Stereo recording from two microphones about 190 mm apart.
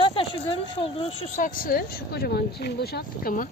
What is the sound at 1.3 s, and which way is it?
Speech, 45° left (ahead or behind).